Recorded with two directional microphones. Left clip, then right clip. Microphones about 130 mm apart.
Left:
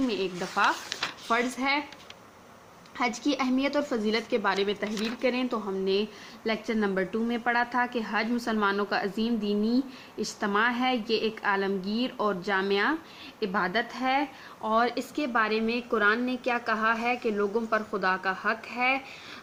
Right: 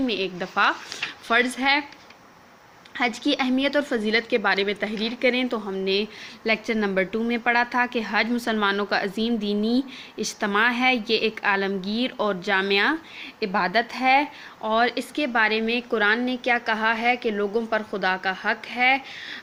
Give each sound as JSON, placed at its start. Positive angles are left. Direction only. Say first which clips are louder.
{"t": 0.1, "sound": "speech", "louder": "right 4 dB", "side_deg": -20}
{"t": 2.9, "sound": "speech", "louder": "right 4 dB", "side_deg": -20}